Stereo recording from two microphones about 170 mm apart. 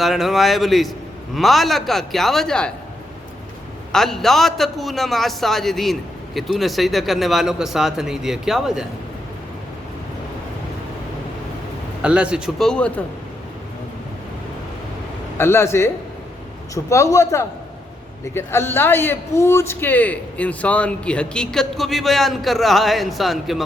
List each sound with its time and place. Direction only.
0.0 s a man's voice: centre (ahead or behind)
3.9 s a man's voice: centre (ahead or behind)
12.0 s a man's voice: 5° right (ahead or behind)
15.4 s a man's voice: 15° left (ahead or behind); by 23.6 s centre (ahead or behind)